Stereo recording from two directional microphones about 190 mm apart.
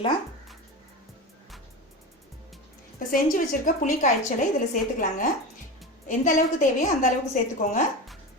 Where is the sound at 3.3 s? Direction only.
45° left (ahead or behind).